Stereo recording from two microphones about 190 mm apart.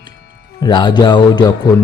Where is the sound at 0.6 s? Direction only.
25° left (ahead or behind).